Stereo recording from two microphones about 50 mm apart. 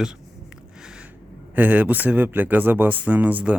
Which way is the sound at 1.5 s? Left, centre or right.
Right.